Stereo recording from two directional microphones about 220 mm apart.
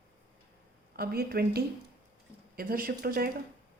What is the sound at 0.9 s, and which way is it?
Speech, 45° right (ahead or behind).